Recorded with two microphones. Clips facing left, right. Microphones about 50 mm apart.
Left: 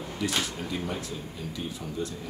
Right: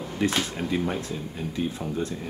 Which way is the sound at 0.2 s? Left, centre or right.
Right.